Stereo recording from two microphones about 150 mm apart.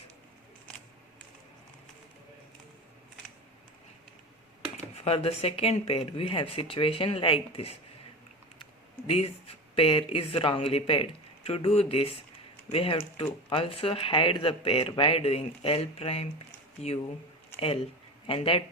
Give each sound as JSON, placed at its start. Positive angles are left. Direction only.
{"t": 5.0, "sound": "speech", "side_deg": 40}
{"t": 9.0, "sound": "speech", "side_deg": 40}
{"t": 18.3, "sound": "speech", "side_deg": 40}